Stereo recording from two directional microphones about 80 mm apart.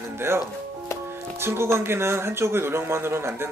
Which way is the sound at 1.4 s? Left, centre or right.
Right.